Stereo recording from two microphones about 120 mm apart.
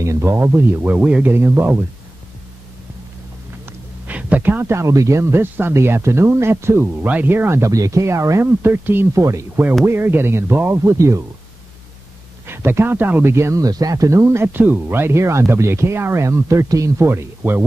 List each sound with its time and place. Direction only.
0.0 s speech: 25° right (ahead or behind)
4.1 s speech: 10° right (ahead or behind)
12.4 s speech: 20° right (ahead or behind)